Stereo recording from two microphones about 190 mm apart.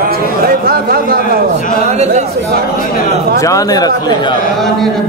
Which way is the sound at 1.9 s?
35° right (ahead or behind).